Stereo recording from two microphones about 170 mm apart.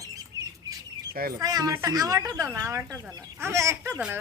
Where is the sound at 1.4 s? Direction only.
20° right (ahead or behind).